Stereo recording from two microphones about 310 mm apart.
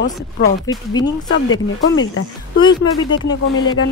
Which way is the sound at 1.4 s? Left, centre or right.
Left.